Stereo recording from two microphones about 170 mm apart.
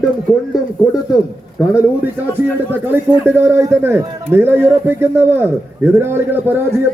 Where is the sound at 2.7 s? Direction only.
10° right (ahead or behind).